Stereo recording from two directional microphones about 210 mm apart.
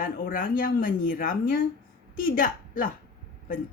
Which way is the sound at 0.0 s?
40° left (ahead or behind).